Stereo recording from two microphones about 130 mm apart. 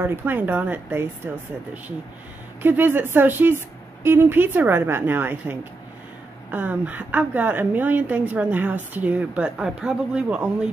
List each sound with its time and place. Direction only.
0.0 s a woman's voice: 15° right (ahead or behind)